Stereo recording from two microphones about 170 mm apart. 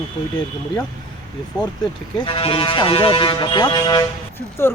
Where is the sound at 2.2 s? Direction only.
30° left (ahead or behind).